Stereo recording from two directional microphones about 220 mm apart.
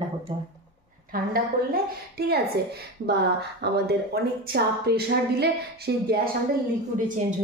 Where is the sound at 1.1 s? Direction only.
40° right (ahead or behind).